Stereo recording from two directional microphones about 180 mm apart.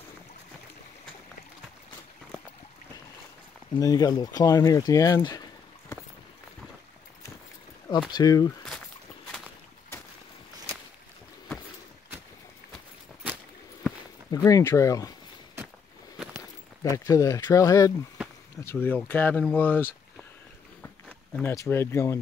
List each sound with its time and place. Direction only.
3.7 s speech: 20° left (ahead or behind)
8.1 s speech: 20° left (ahead or behind)
14.3 s speech: 20° left (ahead or behind)
16.9 s speech: 20° left (ahead or behind)
21.4 s speech: 15° left (ahead or behind)